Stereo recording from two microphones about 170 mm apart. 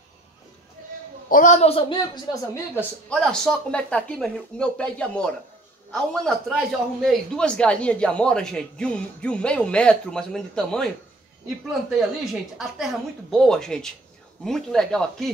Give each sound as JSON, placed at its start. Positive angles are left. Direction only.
{"t": 1.3, "sound": "a woman's voice", "side_deg": 45}
{"t": 3.1, "sound": "a man's voice", "side_deg": 5}
{"t": 11.9, "sound": "a man's voice", "side_deg": -5}